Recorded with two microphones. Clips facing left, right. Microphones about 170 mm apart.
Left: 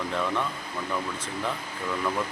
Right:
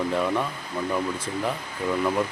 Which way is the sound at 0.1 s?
10° right (ahead or behind).